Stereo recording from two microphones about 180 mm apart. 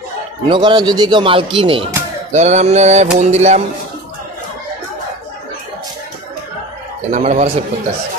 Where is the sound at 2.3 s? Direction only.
40° right (ahead or behind).